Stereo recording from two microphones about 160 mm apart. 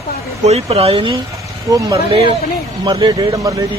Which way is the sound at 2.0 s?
35° right (ahead or behind).